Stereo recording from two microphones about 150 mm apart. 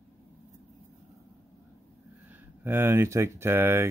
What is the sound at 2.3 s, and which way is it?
Speech, 15° right (ahead or behind).